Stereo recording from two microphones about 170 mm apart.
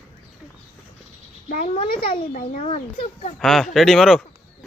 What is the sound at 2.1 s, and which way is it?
Speech, 55° left (ahead or behind).